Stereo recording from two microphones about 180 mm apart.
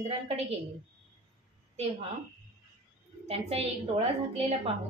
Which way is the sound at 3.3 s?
35° right (ahead or behind).